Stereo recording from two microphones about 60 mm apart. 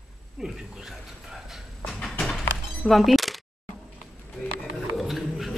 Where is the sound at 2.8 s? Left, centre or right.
Centre.